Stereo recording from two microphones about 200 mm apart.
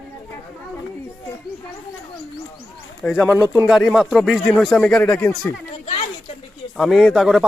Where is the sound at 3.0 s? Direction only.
5° right (ahead or behind).